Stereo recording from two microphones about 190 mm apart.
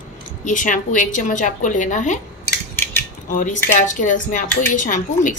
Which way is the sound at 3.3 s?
45° left (ahead or behind).